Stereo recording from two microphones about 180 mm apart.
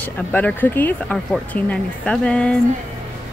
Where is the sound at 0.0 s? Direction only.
10° left (ahead or behind).